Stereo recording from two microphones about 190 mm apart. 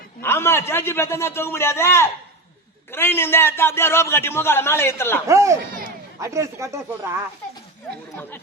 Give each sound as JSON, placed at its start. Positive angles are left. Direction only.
{"t": 0.2, "sound": "a man's voice", "side_deg": 15}
{"t": 5.3, "sound": "speech", "side_deg": -15}